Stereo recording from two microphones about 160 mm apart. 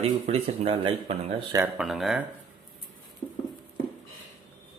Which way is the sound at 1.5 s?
10° right (ahead or behind).